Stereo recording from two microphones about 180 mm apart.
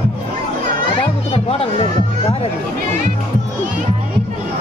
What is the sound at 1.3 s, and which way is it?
Music, 30° left (ahead or behind).